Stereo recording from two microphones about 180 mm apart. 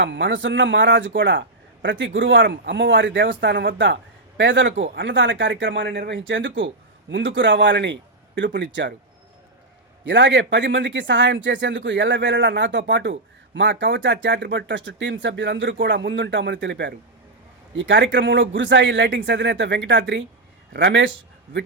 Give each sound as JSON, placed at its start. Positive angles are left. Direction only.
{"t": 0.0, "sound": "speech", "side_deg": -90}
{"t": 10.1, "sound": "speech", "side_deg": -85}
{"t": 17.7, "sound": "speech", "side_deg": -90}